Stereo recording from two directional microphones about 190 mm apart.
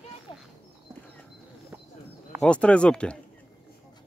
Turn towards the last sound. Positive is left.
turn(degrees=5)  # may be behind; listen again after turning